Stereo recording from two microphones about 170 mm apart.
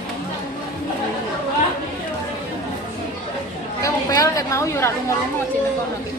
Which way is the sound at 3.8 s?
20° left (ahead or behind).